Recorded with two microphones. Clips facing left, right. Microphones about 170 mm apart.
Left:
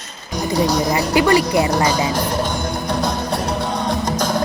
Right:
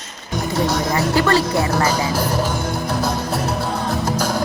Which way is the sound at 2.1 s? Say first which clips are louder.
Even; 5° right (ahead or behind).